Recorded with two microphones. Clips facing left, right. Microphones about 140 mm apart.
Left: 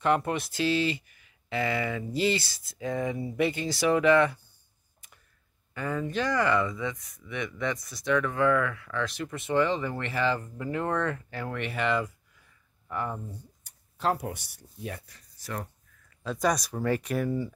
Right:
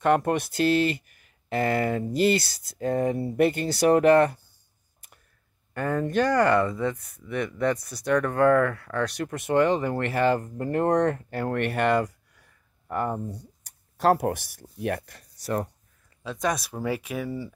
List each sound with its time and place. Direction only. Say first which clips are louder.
0.0 s speech: right 4 dB; 50° right (ahead or behind)
2.9 s speech: right 5 dB; 45° right (ahead or behind)
3.2 s speech: right 5 dB; 60° right (ahead or behind)
5.8 s speech: right 6 dB; 50° right (ahead or behind)
6.7 s speech: right 6 dB; 35° right (ahead or behind)
9.1 s speech: right 3 dB; 65° right (ahead or behind)
14.3 s speech: right 8 dB; 90° right; by 15.2 s 70° right (ahead or behind)
15.4 s speech: right 8 dB; 35° right (ahead or behind)
16.2 s speech: left 1 dB; centre (ahead or behind)